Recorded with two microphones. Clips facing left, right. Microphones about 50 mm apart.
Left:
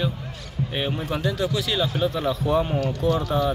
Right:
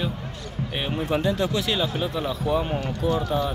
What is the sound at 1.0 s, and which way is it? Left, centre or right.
Speech, right.